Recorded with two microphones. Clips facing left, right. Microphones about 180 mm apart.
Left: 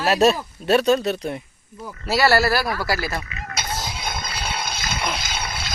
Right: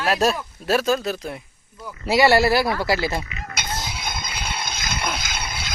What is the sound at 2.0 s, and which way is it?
Speech, 20° right (ahead or behind).